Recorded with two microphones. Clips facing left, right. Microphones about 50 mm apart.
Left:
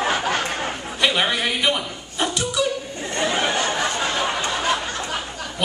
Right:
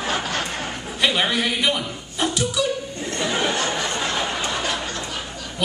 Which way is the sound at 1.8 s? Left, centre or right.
Centre.